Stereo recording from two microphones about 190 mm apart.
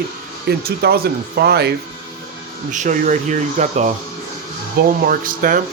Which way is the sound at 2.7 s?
40° right (ahead or behind).